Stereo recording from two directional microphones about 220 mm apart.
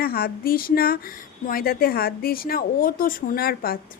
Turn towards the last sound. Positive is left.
turn(degrees=45)  # may be behind; listen again after turning